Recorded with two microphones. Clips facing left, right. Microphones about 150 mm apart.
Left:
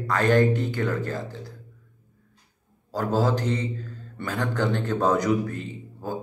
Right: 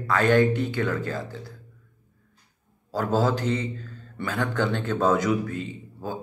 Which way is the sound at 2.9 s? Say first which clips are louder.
Even; 15° left (ahead or behind).